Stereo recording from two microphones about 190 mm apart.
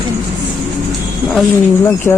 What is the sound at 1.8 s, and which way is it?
Speech, 10° left (ahead or behind).